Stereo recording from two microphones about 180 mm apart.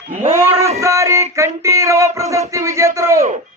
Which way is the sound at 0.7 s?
15° right (ahead or behind).